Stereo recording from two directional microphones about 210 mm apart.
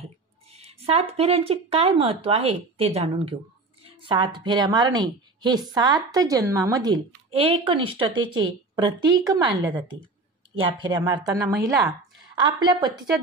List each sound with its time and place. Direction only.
0.5 s a woman's voice: 30° right (ahead or behind)